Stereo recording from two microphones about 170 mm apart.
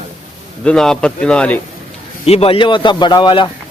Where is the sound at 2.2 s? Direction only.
35° left (ahead or behind).